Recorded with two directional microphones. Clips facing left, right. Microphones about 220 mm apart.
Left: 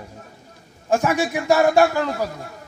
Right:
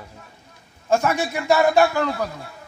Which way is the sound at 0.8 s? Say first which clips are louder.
Left 1 dB; 15° left (ahead or behind).